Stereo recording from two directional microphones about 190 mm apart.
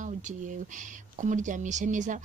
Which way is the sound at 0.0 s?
40° right (ahead or behind).